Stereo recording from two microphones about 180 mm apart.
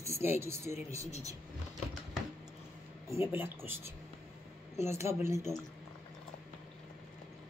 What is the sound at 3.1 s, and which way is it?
Speech, 15° right (ahead or behind).